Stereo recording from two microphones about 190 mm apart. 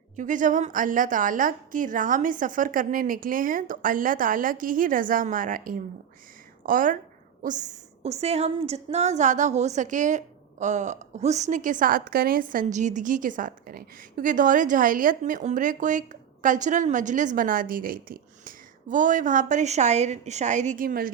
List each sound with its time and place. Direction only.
0.2 s a woman's voice: 45° right (ahead or behind)